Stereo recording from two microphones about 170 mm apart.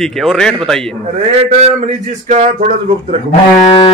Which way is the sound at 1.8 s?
45° right (ahead or behind).